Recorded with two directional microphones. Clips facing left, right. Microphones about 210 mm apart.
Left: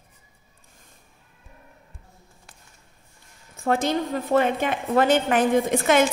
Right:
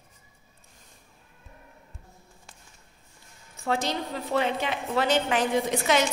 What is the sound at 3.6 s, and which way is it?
A woman's voice, 50° left (ahead or behind).